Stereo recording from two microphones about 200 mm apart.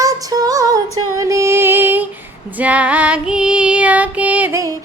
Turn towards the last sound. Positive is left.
turn(degrees=-15)  # may be behind; listen again after turning